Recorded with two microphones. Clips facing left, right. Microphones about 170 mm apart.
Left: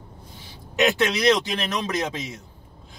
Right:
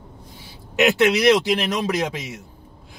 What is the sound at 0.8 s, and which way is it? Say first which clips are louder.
A man's voice: right 4 dB; 15° right (ahead or behind).